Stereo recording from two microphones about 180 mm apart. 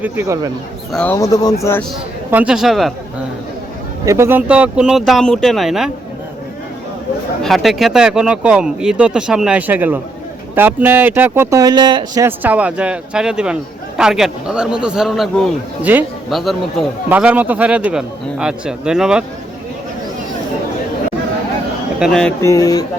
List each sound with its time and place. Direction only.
0.0 s speech: 15° right (ahead or behind)
0.9 s speech: 10° left (ahead or behind)
2.3 s speech: 5° right (ahead or behind)
4.0 s speech: 15° right (ahead or behind)
7.4 s speech: centre (ahead or behind); by 12.3 s 20° right (ahead or behind)
12.4 s speech: 10° right (ahead or behind)
15.8 s speech: 10° right (ahead or behind)
21.9 s speech: centre (ahead or behind)
22.4 s speech: 20° left (ahead or behind)